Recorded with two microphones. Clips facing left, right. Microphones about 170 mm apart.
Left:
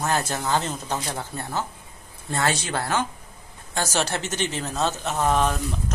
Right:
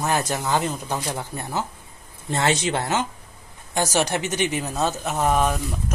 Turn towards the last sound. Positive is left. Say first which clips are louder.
# right 1 dB
turn(degrees=-10)  # may be behind; listen again after turning